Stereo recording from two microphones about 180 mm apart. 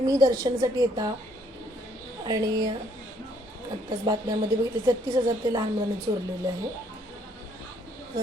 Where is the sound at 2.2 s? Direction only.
20° right (ahead or behind).